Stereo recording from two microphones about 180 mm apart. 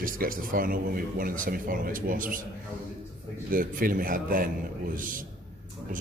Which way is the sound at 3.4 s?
50° right (ahead or behind).